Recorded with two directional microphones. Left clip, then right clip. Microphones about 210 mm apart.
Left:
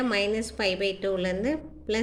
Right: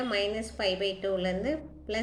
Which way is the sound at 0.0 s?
40° left (ahead or behind).